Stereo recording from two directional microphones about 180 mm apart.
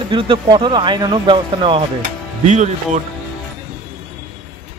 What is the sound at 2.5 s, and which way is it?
Speech, 40° right (ahead or behind).